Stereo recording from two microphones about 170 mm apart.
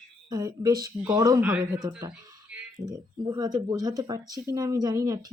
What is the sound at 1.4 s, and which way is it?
Speech, 5° right (ahead or behind).